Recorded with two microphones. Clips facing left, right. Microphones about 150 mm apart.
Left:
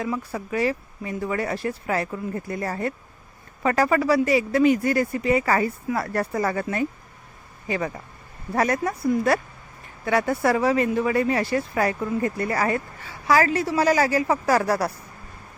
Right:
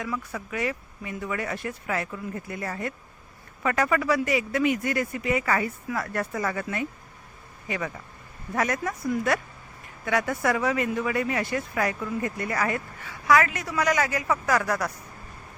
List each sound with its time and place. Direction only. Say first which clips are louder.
0.0 s speech: left 4 dB; 30° left (ahead or behind)